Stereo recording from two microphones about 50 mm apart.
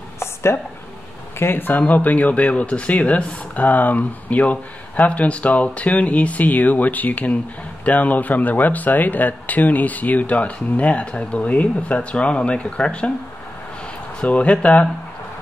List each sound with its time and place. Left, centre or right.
0.2 s a sound: left
1.4 s speech: left
1.8 s speech: left
14.2 s speech: left